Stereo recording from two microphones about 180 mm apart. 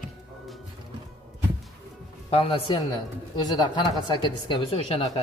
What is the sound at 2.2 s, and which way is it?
A man's voice, 30° left (ahead or behind).